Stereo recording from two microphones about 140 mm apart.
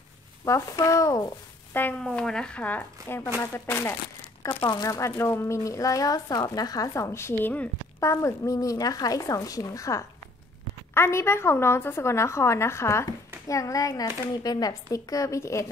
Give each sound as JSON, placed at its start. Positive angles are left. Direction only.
{"t": 0.5, "sound": "speech", "side_deg": 25}
{"t": 1.7, "sound": "speech", "side_deg": 15}
{"t": 4.6, "sound": "speech", "side_deg": 25}